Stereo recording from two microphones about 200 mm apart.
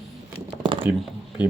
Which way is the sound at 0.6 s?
25° right (ahead or behind).